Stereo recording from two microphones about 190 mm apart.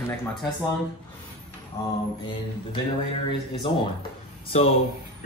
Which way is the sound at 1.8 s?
15° left (ahead or behind).